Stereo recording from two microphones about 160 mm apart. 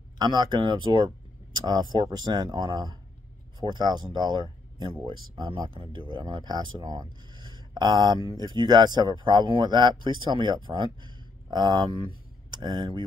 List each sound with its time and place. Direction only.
0.2 s speech: 25° right (ahead or behind)